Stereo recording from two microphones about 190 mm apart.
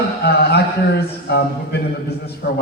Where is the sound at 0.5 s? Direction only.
60° left (ahead or behind).